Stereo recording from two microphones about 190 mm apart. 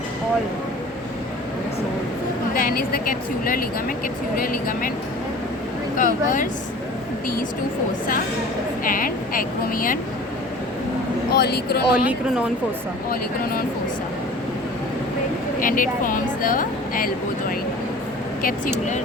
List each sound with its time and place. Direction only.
2.5 s speech: 50° left (ahead or behind)
6.0 s speech: 45° left (ahead or behind)
8.8 s speech: 45° left (ahead or behind)
11.3 s speech: 55° left (ahead or behind)
13.1 s speech: 50° left (ahead or behind)
15.6 s speech: 45° left (ahead or behind)